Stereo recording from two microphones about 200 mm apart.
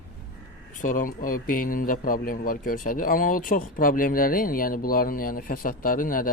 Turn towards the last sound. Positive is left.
turn(degrees=45)  # may be behind; listen again after turning